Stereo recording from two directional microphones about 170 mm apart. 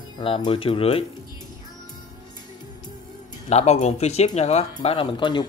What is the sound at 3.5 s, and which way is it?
Speech, 40° left (ahead or behind).